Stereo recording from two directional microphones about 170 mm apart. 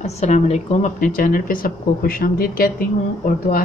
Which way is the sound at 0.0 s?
40° left (ahead or behind).